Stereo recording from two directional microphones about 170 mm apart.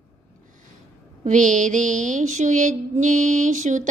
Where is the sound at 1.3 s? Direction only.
45° right (ahead or behind).